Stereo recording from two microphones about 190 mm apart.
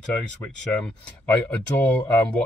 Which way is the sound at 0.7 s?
5° left (ahead or behind).